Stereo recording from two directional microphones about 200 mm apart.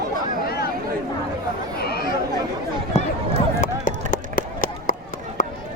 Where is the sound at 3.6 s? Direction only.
40° left (ahead or behind).